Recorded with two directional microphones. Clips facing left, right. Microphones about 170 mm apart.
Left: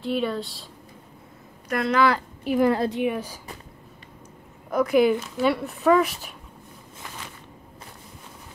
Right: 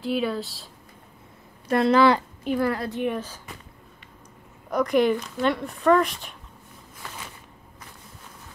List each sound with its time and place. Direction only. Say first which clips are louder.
0.0 s speech: even; centre (ahead or behind)
1.7 s speech: right 3 dB; 30° right (ahead or behind)
2.6 s a woman's voice: left 7 dB; 20° left (ahead or behind)
3.0 s speech: left 2 dB; 10° left (ahead or behind)
4.6 s speech: left 2 dB; centre (ahead or behind)